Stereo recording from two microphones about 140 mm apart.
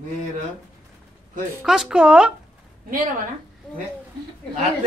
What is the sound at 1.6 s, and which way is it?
Speech, 5° right (ahead or behind).